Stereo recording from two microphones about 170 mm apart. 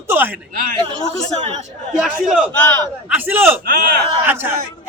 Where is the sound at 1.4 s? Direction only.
40° right (ahead or behind).